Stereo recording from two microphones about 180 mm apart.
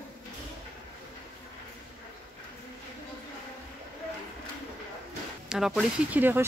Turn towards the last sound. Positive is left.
turn(degrees=-10)  # may be behind; listen again after turning